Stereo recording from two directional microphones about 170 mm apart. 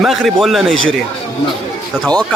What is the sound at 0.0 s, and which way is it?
A man's voice, centre (ahead or behind).